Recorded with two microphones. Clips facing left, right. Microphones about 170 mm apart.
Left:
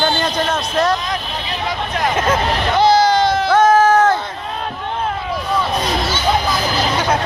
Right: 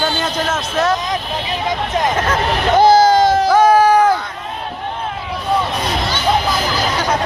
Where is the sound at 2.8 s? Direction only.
45° right (ahead or behind).